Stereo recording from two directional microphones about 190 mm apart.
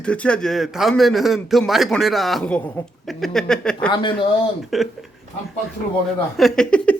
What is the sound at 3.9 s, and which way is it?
Speech, 25° left (ahead or behind).